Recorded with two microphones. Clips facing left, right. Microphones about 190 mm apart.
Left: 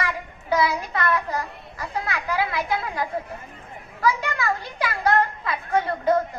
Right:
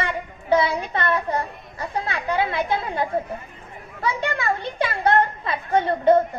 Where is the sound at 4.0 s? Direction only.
25° right (ahead or behind).